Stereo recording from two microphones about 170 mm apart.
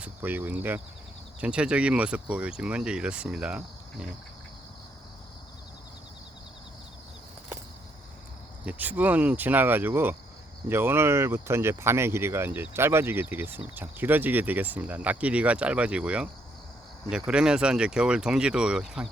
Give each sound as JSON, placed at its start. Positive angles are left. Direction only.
{"t": 0.0, "sound": "speech", "side_deg": -10}
{"t": 8.6, "sound": "speech", "side_deg": -10}